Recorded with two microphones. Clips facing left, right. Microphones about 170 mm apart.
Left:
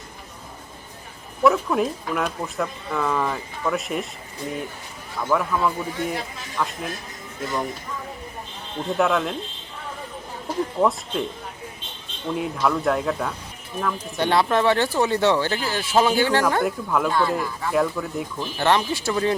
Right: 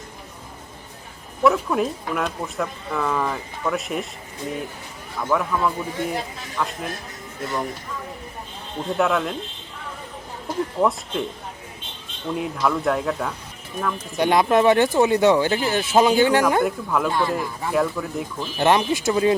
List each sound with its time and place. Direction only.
1.5 s speech: centre (ahead or behind)
5.2 s speech: centre (ahead or behind)
9.0 s speech: centre (ahead or behind)
10.8 s speech: centre (ahead or behind)
12.3 s speech: centre (ahead or behind)
14.2 s speech: 15° right (ahead or behind)
16.6 s speech: centre (ahead or behind)
17.1 s speech: 15° right (ahead or behind)
17.7 s speech: centre (ahead or behind)
18.3 s speech: 15° right (ahead or behind)